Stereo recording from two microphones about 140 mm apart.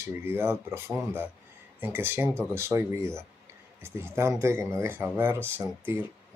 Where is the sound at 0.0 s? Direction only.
15° right (ahead or behind).